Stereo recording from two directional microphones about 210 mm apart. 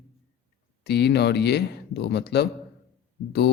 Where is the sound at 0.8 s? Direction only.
50° left (ahead or behind).